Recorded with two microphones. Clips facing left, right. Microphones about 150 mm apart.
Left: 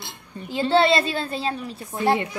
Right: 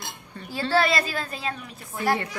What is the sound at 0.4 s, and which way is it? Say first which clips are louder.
A woman's voice: left 4 dB; 20° left (ahead or behind).